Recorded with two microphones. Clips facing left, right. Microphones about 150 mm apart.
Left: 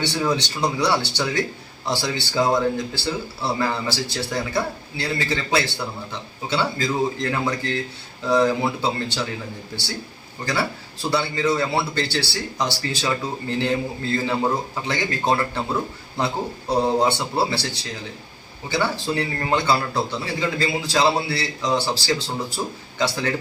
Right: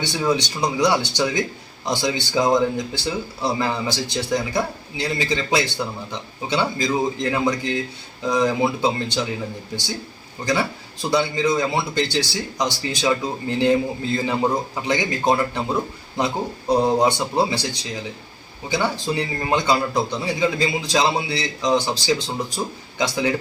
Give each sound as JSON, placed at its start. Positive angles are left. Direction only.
{"t": 0.0, "sound": "speech", "side_deg": -10}
{"t": 11.1, "sound": "speech", "side_deg": -15}
{"t": 18.7, "sound": "speech", "side_deg": -15}